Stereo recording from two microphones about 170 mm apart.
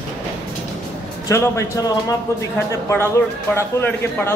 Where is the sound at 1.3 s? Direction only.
15° left (ahead or behind).